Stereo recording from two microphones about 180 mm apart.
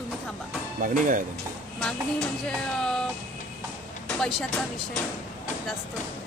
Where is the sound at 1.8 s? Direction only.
5° left (ahead or behind).